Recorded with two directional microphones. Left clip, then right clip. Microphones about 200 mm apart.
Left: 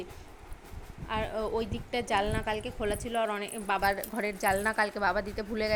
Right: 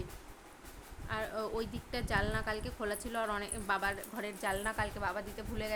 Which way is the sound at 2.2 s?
10° left (ahead or behind).